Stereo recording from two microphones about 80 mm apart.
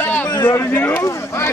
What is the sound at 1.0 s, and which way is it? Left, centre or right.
Speech, left.